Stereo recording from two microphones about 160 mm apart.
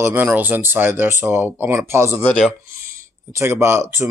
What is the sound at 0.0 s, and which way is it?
Speech, 10° right (ahead or behind).